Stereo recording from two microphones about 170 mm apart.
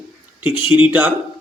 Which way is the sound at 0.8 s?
10° right (ahead or behind).